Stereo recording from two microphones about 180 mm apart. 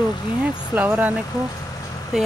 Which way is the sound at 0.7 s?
10° right (ahead or behind).